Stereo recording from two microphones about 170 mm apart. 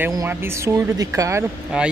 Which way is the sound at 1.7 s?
5° right (ahead or behind).